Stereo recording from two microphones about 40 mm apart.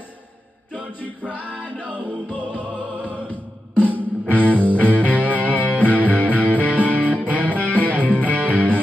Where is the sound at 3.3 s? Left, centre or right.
Left.